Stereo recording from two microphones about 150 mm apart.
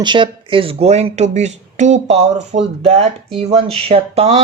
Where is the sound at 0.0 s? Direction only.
30° right (ahead or behind).